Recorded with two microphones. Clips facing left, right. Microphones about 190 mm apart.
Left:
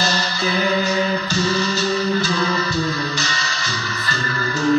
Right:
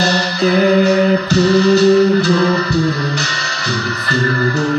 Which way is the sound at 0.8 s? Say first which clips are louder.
Right 8 dB; 60° right (ahead or behind).